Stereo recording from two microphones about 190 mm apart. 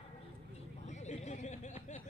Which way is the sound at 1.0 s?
35° left (ahead or behind).